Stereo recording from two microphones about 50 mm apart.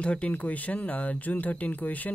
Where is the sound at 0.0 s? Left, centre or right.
Left.